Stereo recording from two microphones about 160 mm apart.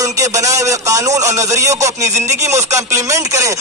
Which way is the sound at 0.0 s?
20° right (ahead or behind).